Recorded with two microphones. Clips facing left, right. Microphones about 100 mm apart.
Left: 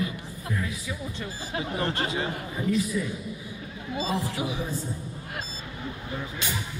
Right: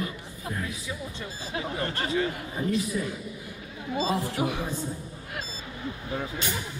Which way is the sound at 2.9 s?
45° right (ahead or behind).